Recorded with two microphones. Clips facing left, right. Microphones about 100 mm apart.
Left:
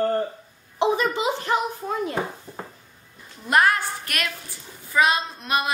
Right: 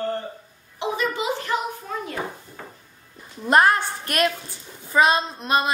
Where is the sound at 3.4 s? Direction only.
30° right (ahead or behind).